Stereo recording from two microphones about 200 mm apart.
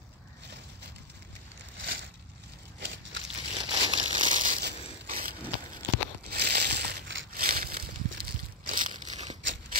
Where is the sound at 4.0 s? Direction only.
40° right (ahead or behind).